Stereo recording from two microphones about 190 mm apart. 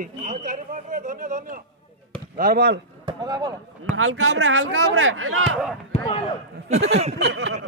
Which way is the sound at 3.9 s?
90° right.